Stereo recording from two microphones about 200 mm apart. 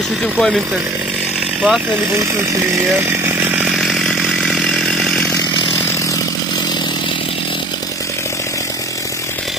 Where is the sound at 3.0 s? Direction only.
10° right (ahead or behind); by 5.3 s 5° left (ahead or behind).